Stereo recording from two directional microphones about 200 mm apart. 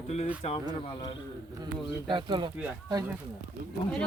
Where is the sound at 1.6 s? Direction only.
25° right (ahead or behind).